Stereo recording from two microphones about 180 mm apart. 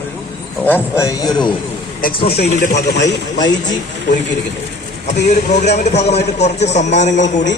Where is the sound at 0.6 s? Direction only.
15° left (ahead or behind).